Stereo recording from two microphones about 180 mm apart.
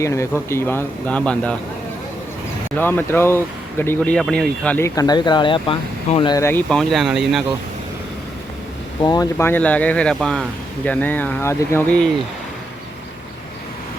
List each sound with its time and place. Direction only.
0.0 s speech: 15° left (ahead or behind)
2.7 s speech: 10° left (ahead or behind)
4.9 s speech: 25° left (ahead or behind)
6.3 s speech: 15° left (ahead or behind)
9.0 s speech: 20° left (ahead or behind)